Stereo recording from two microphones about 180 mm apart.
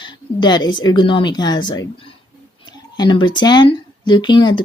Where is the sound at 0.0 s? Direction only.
25° left (ahead or behind).